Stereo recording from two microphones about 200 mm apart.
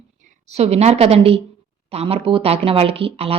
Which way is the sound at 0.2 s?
35° right (ahead or behind).